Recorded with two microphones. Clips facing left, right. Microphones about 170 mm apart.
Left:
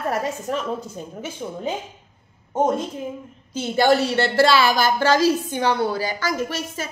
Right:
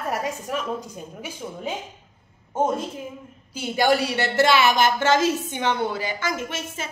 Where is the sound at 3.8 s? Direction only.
10° right (ahead or behind).